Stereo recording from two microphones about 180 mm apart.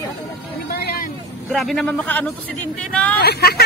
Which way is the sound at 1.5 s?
Centre (ahead or behind).